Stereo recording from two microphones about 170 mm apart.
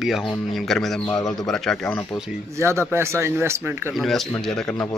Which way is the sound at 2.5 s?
15° right (ahead or behind).